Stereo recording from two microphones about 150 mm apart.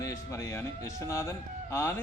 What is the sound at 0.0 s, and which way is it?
A man's voice, 20° left (ahead or behind).